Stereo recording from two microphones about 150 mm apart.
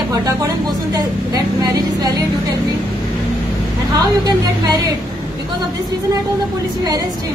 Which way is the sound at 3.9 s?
25° right (ahead or behind).